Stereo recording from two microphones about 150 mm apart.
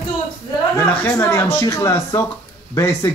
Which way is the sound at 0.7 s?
15° left (ahead or behind).